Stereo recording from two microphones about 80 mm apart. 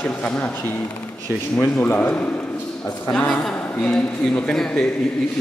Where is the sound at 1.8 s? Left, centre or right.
Left.